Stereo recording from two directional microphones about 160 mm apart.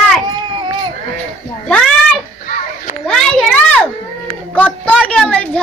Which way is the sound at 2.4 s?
60° left (ahead or behind).